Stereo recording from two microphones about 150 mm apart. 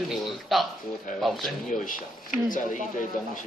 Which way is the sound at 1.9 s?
65° left (ahead or behind).